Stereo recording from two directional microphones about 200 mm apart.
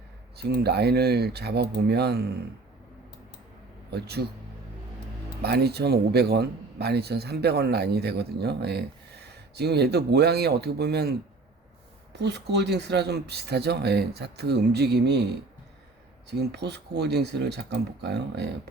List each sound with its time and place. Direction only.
0.3 s speech: 55° right (ahead or behind)
3.9 s speech: 55° right (ahead or behind)
5.4 s a man's voice: 55° right (ahead or behind)
12.1 s a man's voice: 60° right (ahead or behind)
16.5 s a man's voice: 55° right (ahead or behind)